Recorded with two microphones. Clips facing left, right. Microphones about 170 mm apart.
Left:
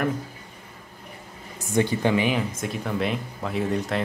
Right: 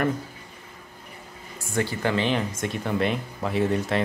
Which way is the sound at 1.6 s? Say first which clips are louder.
Left 4 dB; 20° left (ahead or behind).